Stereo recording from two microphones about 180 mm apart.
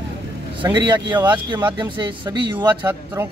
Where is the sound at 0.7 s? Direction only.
25° right (ahead or behind).